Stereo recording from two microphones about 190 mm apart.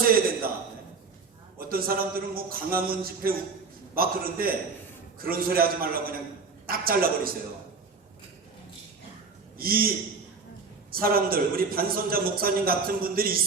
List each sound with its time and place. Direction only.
1.7 s a man's voice: 50° right (ahead or behind)
9.6 s a man's voice: 50° right (ahead or behind)
10.9 s a man's voice: 50° right (ahead or behind)